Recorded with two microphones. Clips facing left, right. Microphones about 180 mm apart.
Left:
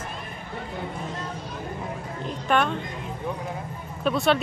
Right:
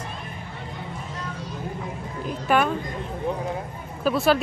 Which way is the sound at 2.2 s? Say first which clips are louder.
Right 2 dB; 5° right (ahead or behind).